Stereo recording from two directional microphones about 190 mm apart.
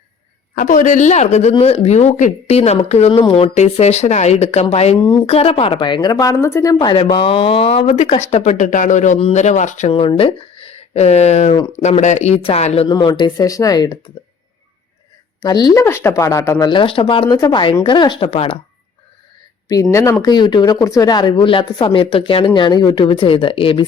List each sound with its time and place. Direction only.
0.5 s speech: 45° left (ahead or behind)
12.9 s speech: 20° left (ahead or behind)
15.4 s speech: 20° left (ahead or behind)
19.6 s speech: 20° left (ahead or behind)